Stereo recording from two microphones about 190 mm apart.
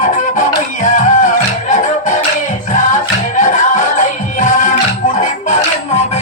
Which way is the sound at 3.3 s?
40° left (ahead or behind).